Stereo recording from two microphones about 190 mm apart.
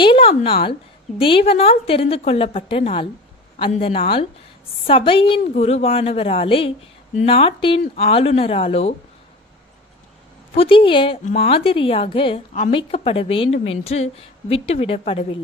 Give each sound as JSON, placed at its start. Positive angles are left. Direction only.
{"t": 0.0, "sound": "a woman's voice", "side_deg": 30}
{"t": 10.5, "sound": "a woman's voice", "side_deg": 30}